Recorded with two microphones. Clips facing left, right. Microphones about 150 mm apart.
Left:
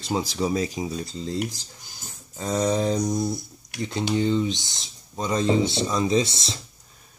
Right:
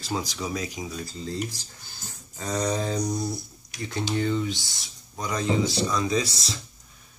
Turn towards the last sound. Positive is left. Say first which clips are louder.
# left 4 dB
turn(degrees=25)  # may be behind; listen again after turning